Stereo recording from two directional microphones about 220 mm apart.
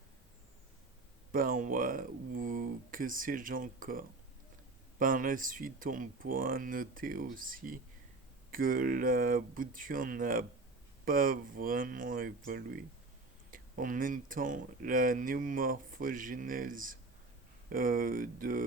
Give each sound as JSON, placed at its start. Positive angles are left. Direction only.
{"t": 1.3, "sound": "speech", "side_deg": -40}